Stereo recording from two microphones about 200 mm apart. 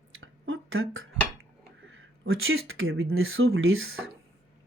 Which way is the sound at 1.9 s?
90° right.